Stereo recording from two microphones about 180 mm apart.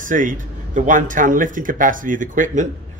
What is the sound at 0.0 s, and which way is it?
Speech, 45° right (ahead or behind).